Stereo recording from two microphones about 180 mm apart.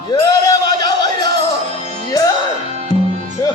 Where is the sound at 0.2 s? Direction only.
20° left (ahead or behind).